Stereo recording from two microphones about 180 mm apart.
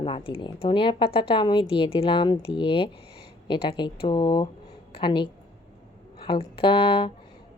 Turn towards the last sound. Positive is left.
turn(degrees=30)  # may be behind; listen again after turning